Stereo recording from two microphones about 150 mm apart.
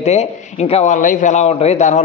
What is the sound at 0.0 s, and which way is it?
Speech, 45° left (ahead or behind).